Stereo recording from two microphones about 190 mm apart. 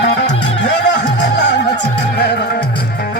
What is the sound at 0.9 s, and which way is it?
Music, 65° left (ahead or behind).